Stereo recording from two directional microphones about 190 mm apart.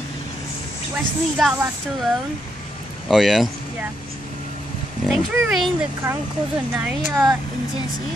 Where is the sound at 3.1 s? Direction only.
Centre (ahead or behind).